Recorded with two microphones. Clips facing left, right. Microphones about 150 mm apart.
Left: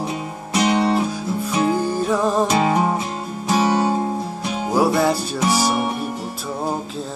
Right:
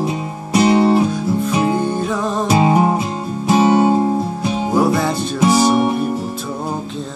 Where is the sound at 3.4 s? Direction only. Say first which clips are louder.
Right 5 dB; 25° right (ahead or behind).